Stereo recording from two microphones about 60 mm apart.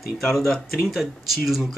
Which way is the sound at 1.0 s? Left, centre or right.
Centre.